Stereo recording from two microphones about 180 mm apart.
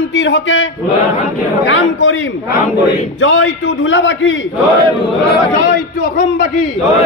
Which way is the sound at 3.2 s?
90° left.